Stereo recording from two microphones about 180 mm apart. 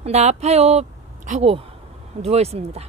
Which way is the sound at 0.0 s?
35° right (ahead or behind).